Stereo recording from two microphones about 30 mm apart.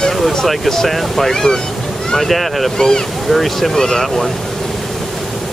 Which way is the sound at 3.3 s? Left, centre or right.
Centre.